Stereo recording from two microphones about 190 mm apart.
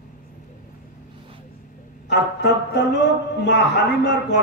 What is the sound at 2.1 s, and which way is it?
A man's voice, 65° left (ahead or behind).